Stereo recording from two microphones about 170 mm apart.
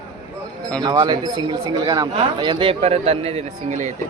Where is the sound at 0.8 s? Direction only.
25° right (ahead or behind); by 3.9 s 45° right (ahead or behind).